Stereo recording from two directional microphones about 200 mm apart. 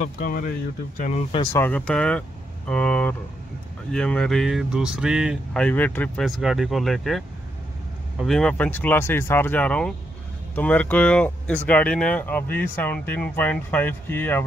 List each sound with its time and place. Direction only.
0.0 s speech: 45° left (ahead or behind)
1.3 s speech: 20° left (ahead or behind)
1.6 s speech: 5° left (ahead or behind)